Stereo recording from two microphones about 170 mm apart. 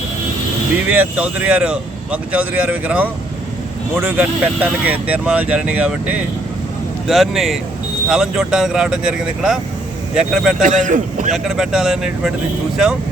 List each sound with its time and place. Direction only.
0.9 s speech: 10° right (ahead or behind)
10.6 s a man's voice: 50° right (ahead or behind)
11.4 s speech: 5° right (ahead or behind)